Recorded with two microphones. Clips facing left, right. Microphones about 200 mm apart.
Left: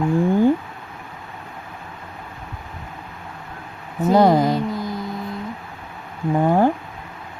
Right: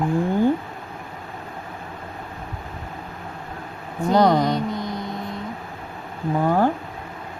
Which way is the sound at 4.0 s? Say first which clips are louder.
Left 3 dB; 5° left (ahead or behind).